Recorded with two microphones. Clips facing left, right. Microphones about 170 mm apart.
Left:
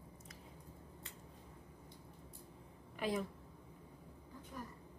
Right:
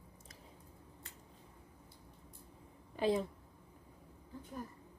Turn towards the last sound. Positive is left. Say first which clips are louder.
# right 6 dB
turn(degrees=-30)  # may be behind; listen again after turning